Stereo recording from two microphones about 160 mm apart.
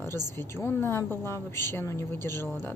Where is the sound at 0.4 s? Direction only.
15° left (ahead or behind).